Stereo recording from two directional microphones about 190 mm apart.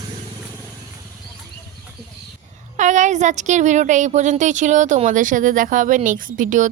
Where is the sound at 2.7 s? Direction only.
40° right (ahead or behind).